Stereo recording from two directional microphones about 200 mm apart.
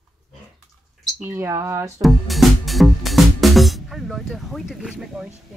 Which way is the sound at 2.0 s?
Centre (ahead or behind).